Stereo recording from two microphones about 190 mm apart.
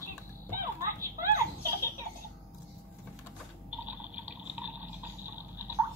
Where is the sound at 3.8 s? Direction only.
10° right (ahead or behind).